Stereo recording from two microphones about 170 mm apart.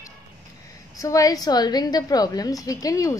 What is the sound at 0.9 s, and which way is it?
A woman's voice, 20° left (ahead or behind).